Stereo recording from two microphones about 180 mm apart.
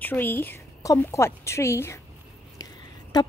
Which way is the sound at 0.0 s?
10° left (ahead or behind).